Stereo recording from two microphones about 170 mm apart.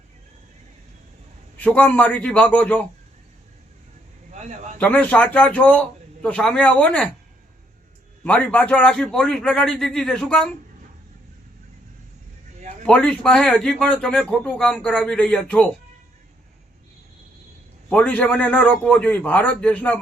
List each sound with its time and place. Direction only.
1.5 s a man's voice: 10° left (ahead or behind)
4.3 s a sound: 45° right (ahead or behind)
4.8 s a man's voice: 10° left (ahead or behind)
8.2 s a man's voice: 5° left (ahead or behind)
12.8 s a man's voice: 5° left (ahead or behind)
17.8 s a man's voice: 10° left (ahead or behind)